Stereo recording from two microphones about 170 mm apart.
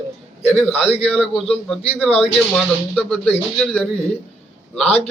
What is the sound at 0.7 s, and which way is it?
Speech, 35° left (ahead or behind).